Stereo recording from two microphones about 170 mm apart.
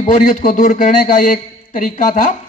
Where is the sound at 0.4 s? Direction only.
50° left (ahead or behind).